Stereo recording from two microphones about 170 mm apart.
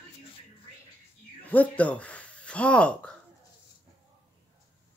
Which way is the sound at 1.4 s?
10° left (ahead or behind).